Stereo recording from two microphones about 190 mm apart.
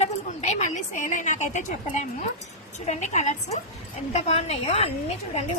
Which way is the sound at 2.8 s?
35° left (ahead or behind).